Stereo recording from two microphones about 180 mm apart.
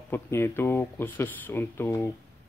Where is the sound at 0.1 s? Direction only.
15° left (ahead or behind).